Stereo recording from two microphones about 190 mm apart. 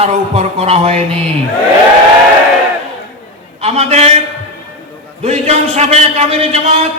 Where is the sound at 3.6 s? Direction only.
35° right (ahead or behind).